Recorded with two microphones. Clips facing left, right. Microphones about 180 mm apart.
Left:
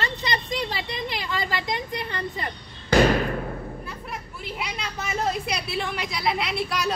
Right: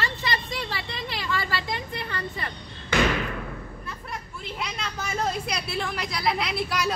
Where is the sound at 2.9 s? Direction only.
40° left (ahead or behind).